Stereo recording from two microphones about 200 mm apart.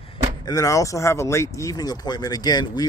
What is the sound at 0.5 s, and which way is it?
Speech, 15° left (ahead or behind).